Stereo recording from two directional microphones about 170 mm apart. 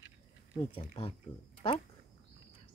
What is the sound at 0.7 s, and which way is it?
Speech, 35° left (ahead or behind).